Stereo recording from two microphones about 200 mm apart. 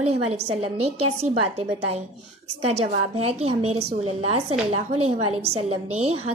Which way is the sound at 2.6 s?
30° right (ahead or behind).